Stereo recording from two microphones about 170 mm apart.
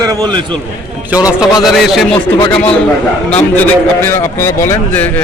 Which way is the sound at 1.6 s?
Centre (ahead or behind).